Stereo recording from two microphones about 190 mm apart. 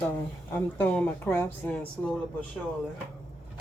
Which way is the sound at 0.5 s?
5° left (ahead or behind).